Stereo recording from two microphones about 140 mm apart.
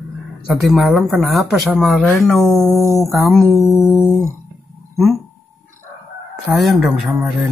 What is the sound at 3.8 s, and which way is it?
Music, 20° left (ahead or behind).